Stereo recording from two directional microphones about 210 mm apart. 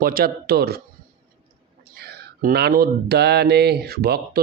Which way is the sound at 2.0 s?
50° right (ahead or behind).